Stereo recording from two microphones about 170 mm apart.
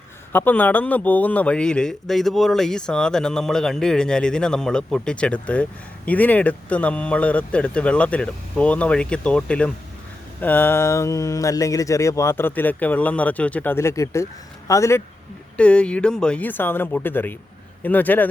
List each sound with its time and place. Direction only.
0.3 s a man's voice: 10° left (ahead or behind)
15.5 s speech: 5° left (ahead or behind)